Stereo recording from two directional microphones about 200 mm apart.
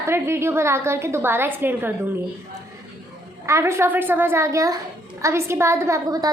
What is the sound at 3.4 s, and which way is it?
A woman's voice, 15° right (ahead or behind).